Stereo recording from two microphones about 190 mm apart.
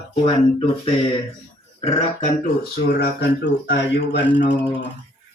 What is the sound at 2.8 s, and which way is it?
Speech, 60° left (ahead or behind).